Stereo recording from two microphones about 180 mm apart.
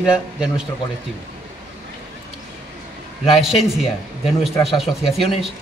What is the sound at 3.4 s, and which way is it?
Speech, centre (ahead or behind).